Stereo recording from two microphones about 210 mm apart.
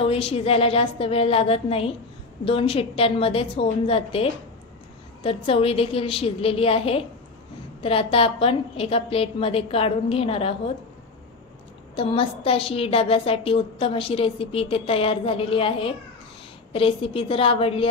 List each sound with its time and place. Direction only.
0.0 s a woman's voice: 25° left (ahead or behind)
11.9 s a woman's voice: 25° left (ahead or behind)